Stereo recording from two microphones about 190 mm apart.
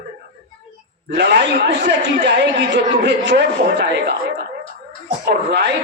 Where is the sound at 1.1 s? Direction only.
65° right (ahead or behind).